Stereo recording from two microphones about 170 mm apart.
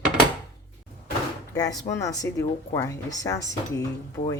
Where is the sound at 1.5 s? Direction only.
20° left (ahead or behind).